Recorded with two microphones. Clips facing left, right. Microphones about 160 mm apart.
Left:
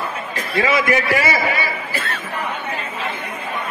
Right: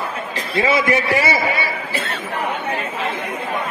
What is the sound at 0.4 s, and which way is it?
A man's voice, 30° right (ahead or behind).